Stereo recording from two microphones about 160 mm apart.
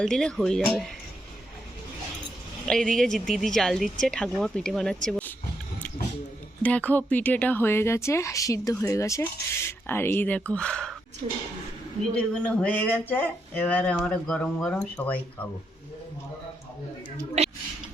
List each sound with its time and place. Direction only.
0.0 s speech: 5° left (ahead or behind)
2.6 s speech: 5° left (ahead or behind)
5.0 s a sound: 5° left (ahead or behind)
6.6 s speech: 10° left (ahead or behind)
12.1 s speech: 10° left (ahead or behind)